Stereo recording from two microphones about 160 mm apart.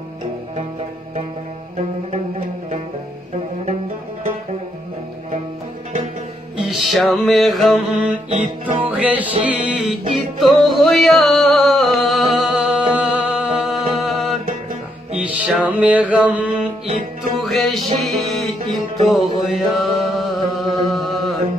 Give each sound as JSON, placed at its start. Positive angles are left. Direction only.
{"t": 6.5, "sound": "music", "side_deg": -5}
{"t": 8.3, "sound": "music", "side_deg": -35}
{"t": 8.8, "sound": "music", "side_deg": -10}
{"t": 19.4, "sound": "mantra", "side_deg": 0}